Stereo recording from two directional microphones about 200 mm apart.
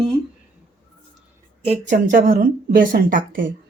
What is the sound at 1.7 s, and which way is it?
A woman's voice, 40° right (ahead or behind).